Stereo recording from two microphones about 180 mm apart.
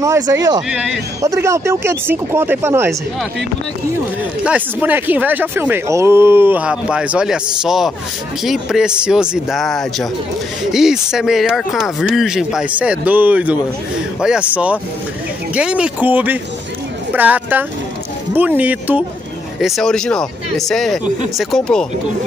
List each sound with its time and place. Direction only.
0.0 s speech: 15° right (ahead or behind)
0.6 s speech: 5° right (ahead or behind)
1.2 s speech: 15° right (ahead or behind)
4.5 s speech: 5° right (ahead or behind)